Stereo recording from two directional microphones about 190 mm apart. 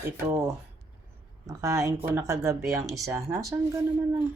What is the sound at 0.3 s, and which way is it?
Speech, 15° right (ahead or behind).